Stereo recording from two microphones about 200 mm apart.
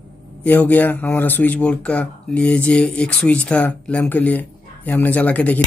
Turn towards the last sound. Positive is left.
turn(degrees=5)  # may be behind; listen again after turning